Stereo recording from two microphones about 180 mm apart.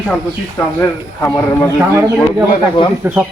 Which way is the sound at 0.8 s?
15° left (ahead or behind).